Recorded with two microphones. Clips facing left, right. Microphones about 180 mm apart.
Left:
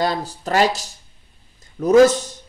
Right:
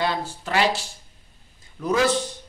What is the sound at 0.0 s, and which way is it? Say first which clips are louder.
Speech: left 4 dB; 40° left (ahead or behind).